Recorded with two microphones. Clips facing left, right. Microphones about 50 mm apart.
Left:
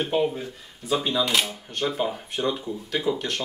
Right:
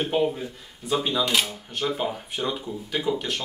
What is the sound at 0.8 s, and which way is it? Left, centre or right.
Speech, centre.